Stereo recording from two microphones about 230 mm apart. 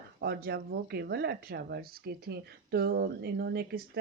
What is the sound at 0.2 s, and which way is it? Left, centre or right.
Speech, right.